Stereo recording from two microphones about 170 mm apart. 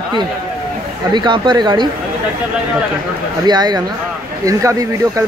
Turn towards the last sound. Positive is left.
turn(degrees=-20)  # may be behind; listen again after turning